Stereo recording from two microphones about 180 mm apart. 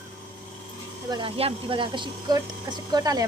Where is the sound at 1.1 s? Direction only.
30° right (ahead or behind).